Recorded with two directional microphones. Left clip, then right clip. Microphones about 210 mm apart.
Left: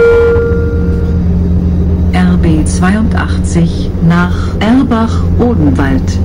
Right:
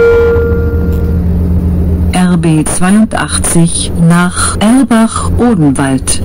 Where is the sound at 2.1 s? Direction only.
50° right (ahead or behind).